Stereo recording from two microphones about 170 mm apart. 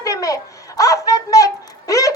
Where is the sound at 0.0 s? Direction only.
20° left (ahead or behind).